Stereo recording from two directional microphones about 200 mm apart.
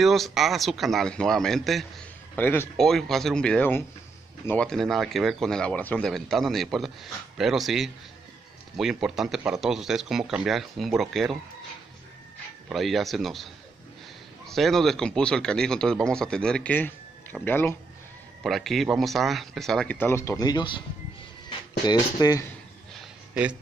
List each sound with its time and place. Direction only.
0.0 s speech: centre (ahead or behind)
12.6 s speech: centre (ahead or behind); by 22.5 s 20° left (ahead or behind)